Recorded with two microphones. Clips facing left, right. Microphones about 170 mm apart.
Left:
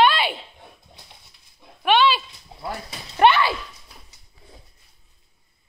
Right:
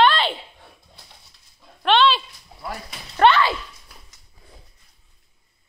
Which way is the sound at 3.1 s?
15° left (ahead or behind).